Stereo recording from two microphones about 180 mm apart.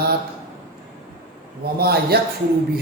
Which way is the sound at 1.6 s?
60° right (ahead or behind).